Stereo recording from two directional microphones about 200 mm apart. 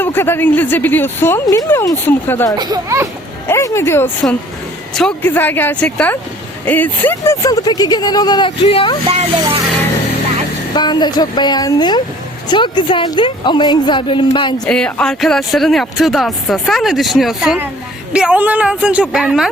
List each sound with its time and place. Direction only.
0.0 s speech: 10° left (ahead or behind)
2.6 s speech: 20° right (ahead or behind)
3.4 s speech: 15° left (ahead or behind)
10.8 s speech: 20° left (ahead or behind)
14.6 s speech: 5° left (ahead or behind)